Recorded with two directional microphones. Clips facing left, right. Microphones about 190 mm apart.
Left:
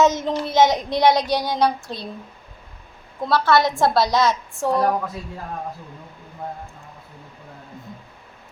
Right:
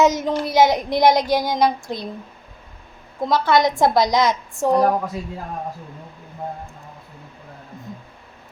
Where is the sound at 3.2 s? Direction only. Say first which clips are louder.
Right 1 dB; 15° right (ahead or behind).